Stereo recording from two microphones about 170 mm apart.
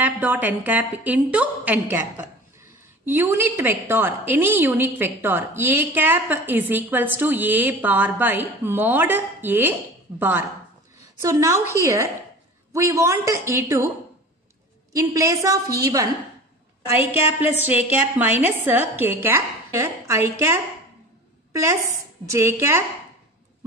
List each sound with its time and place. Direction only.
0.0 s a woman's voice: 10° right (ahead or behind)
14.9 s a woman's voice: 20° right (ahead or behind)
17.6 s a woman's voice: 10° right (ahead or behind)
22.2 s a woman's voice: 15° right (ahead or behind)